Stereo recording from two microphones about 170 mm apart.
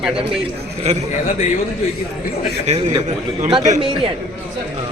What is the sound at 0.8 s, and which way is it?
Speech, 40° right (ahead or behind).